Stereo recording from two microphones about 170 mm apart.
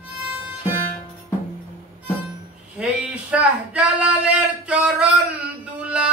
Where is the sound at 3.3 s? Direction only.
5° right (ahead or behind).